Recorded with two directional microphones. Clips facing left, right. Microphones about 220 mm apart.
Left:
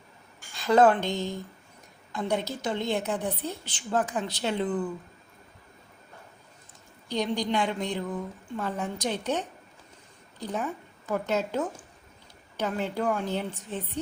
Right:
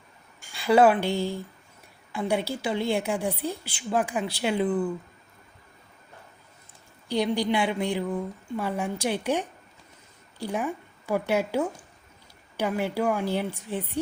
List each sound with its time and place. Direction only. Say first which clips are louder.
0.5 s a woman's voice: right 1 dB; 10° right (ahead or behind)
7.1 s a woman's voice: right 3 dB; 10° right (ahead or behind)